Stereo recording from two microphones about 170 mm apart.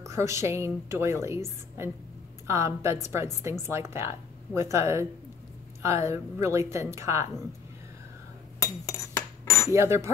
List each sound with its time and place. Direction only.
0.0 s a woman's voice: 15° right (ahead or behind)
8.6 s cutlery: 20° left (ahead or behind)
9.7 s a woman's voice: 15° right (ahead or behind)